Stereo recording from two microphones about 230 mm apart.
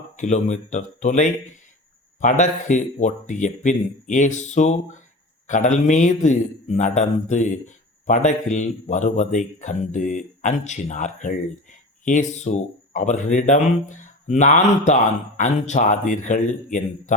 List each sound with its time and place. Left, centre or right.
0.2 s a man's voice: left